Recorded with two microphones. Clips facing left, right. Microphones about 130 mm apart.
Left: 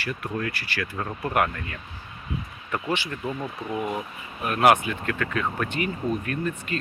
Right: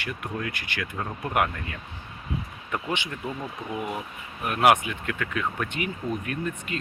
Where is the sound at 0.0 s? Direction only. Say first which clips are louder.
Left 3 dB; 15° right (ahead or behind).